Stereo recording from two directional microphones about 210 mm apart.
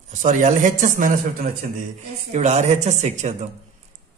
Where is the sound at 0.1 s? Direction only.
35° right (ahead or behind).